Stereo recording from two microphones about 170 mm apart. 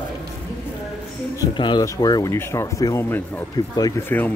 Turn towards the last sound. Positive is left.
turn(degrees=10)  # may be behind; listen again after turning